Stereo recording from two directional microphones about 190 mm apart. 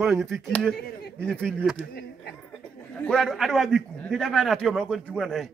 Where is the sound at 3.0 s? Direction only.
Centre (ahead or behind).